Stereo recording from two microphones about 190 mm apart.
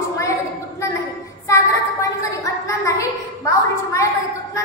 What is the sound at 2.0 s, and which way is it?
A woman's voice, 15° left (ahead or behind).